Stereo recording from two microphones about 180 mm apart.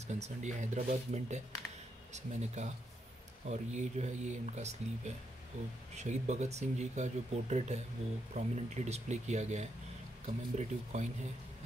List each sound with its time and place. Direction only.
0.0 s speech: 40° right (ahead or behind)